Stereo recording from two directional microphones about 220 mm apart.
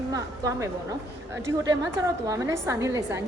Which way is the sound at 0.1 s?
15° right (ahead or behind).